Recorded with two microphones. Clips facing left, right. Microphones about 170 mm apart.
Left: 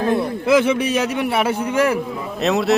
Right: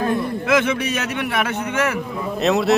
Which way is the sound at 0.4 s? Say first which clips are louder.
Left 4 dB; 30° left (ahead or behind).